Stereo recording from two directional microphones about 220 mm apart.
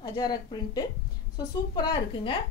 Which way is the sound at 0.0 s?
20° left (ahead or behind).